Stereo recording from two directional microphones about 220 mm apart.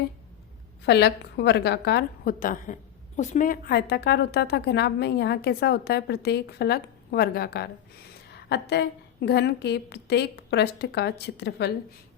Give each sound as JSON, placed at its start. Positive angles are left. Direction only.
{"t": 0.9, "sound": "a woman's voice", "side_deg": 50}